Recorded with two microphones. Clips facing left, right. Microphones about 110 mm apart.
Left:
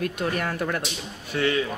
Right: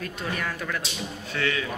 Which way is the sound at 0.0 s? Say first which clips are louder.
Left 5 dB; 60° left (ahead or behind).